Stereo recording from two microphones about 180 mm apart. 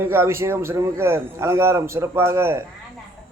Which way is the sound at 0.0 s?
15° right (ahead or behind).